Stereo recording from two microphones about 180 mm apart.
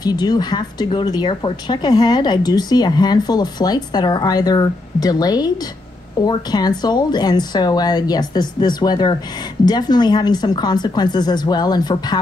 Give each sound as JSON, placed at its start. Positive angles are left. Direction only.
{"t": 0.0, "sound": "speech", "side_deg": 20}